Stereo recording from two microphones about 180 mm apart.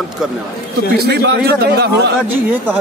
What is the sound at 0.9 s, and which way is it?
Speech, 60° right (ahead or behind).